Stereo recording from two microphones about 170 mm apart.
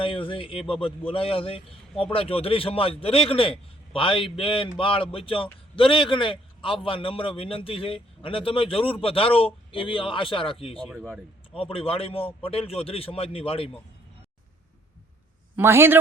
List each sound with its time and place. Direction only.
0.0 s a man's voice: 30° left (ahead or behind)
15.5 s a man's voice: 15° right (ahead or behind)